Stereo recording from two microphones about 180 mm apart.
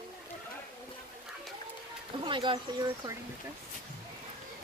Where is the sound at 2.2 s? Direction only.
25° right (ahead or behind).